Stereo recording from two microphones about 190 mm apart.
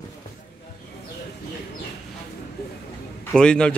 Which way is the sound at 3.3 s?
5° left (ahead or behind).